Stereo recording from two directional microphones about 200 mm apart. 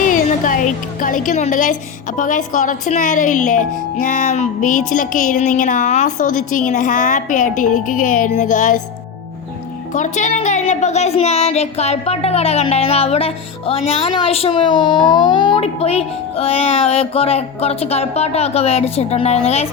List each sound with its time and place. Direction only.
0.0 s music: 40° left (ahead or behind)
2.1 s a woman's voice: 40° left (ahead or behind)
9.9 s a woman's voice: 35° left (ahead or behind)